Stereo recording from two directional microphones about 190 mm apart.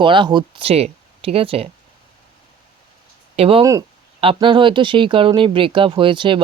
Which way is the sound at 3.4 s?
30° right (ahead or behind).